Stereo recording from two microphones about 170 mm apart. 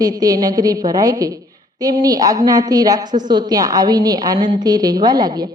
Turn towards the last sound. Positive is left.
turn(degrees=-25)  # may be behind; listen again after turning